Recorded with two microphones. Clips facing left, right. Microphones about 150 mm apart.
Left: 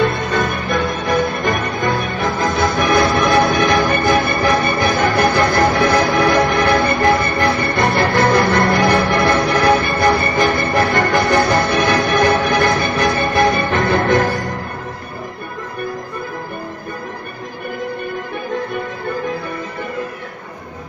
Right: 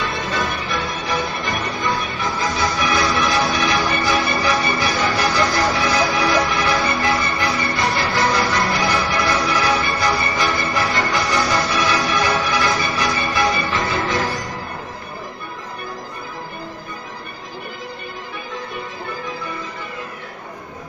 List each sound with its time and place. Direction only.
0.0 s music: 55° left (ahead or behind)
18.5 s music: 55° left (ahead or behind)